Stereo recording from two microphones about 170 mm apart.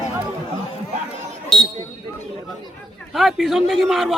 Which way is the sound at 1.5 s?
Centre (ahead or behind).